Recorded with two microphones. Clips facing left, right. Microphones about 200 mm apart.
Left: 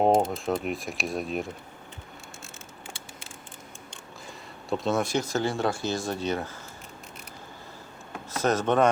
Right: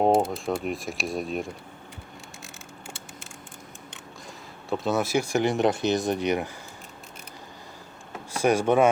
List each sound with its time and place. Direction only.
0.2 s speech: centre (ahead or behind)
4.7 s speech: centre (ahead or behind)
8.3 s speech: 10° right (ahead or behind)